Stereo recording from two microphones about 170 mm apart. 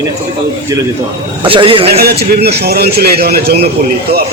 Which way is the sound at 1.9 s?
70° right (ahead or behind).